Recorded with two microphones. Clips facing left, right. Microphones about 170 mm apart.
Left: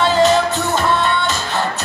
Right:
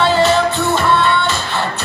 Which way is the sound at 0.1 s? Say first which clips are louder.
Even; 40° left (ahead or behind).